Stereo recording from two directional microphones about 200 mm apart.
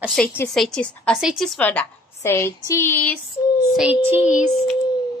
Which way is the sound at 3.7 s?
5° right (ahead or behind).